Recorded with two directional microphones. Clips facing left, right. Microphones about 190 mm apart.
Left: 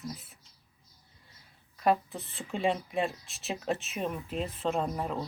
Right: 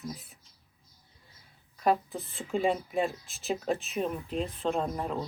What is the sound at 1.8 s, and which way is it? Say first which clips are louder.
Speech: even; centre (ahead or behind).